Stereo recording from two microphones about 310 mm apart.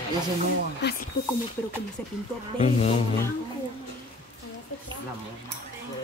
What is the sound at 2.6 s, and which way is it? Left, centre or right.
Music, left.